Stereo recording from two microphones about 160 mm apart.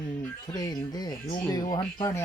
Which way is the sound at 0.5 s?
25° left (ahead or behind).